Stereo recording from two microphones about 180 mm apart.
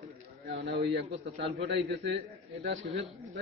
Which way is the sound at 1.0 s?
35° right (ahead or behind).